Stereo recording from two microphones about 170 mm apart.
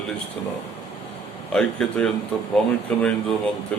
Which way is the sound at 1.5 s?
5° left (ahead or behind).